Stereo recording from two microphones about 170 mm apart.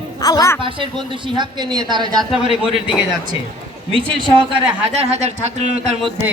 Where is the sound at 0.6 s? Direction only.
30° right (ahead or behind).